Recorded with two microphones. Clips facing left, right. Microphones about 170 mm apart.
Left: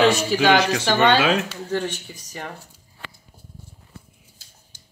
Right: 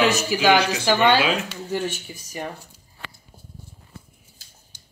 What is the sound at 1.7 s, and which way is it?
Speech, 10° right (ahead or behind).